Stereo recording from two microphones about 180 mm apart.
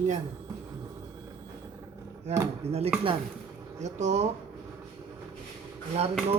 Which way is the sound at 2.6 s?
35° right (ahead or behind).